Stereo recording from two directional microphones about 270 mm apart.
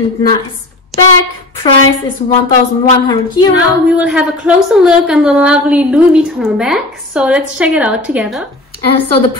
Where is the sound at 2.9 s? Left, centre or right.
Centre.